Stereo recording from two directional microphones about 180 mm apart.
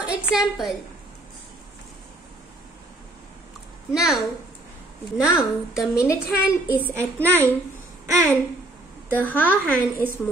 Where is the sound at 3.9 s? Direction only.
Centre (ahead or behind).